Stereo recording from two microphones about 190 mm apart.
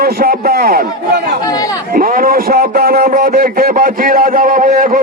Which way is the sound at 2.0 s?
45° right (ahead or behind).